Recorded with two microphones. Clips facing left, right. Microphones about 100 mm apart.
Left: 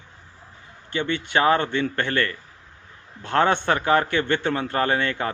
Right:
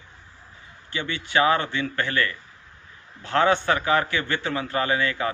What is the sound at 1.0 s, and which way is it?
A man's voice, 40° left (ahead or behind).